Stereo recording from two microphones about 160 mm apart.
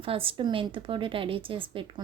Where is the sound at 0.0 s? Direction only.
35° right (ahead or behind).